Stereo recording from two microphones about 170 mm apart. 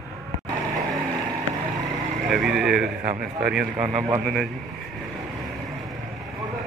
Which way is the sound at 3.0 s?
55° right (ahead or behind).